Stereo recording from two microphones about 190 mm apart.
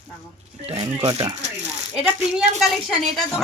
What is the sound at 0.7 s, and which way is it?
Speech, 30° right (ahead or behind).